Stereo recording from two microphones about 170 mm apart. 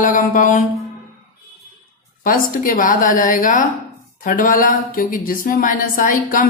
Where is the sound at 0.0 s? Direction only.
50° left (ahead or behind).